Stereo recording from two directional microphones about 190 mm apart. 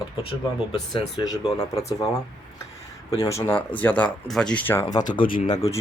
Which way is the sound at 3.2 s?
15° left (ahead or behind).